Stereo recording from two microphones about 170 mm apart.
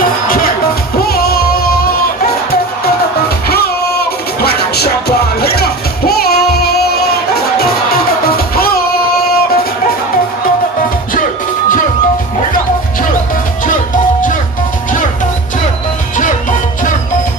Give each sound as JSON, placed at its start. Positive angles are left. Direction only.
{"t": 1.0, "sound": "music", "side_deg": 65}
{"t": 4.4, "sound": "music", "side_deg": 70}
{"t": 8.3, "sound": "music", "side_deg": 65}
{"t": 13.7, "sound": "music", "side_deg": 50}
{"t": 16.1, "sound": "music", "side_deg": 50}